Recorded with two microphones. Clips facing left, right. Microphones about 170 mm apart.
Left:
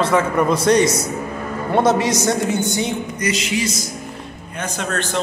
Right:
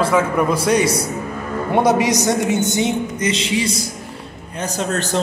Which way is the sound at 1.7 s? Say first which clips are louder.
Right 1 dB; 15° right (ahead or behind).